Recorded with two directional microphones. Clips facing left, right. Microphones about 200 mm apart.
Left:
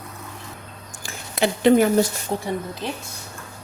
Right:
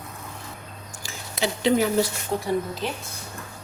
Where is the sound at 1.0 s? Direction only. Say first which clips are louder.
Left 5 dB; 55° left (ahead or behind).